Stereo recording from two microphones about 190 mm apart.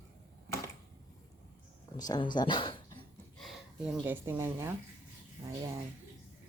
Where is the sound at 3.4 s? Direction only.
Centre (ahead or behind).